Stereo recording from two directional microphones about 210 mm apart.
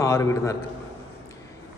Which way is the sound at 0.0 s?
15° left (ahead or behind).